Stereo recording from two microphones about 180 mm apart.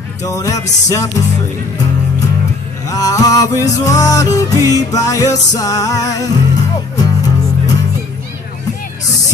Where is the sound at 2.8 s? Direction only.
20° left (ahead or behind).